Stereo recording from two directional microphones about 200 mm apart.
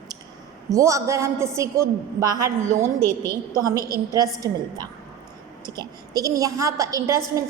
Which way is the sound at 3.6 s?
20° right (ahead or behind).